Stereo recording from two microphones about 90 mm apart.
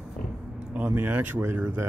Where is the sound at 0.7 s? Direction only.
20° right (ahead or behind).